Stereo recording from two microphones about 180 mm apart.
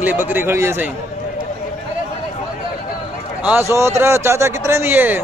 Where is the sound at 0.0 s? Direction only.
10° right (ahead or behind).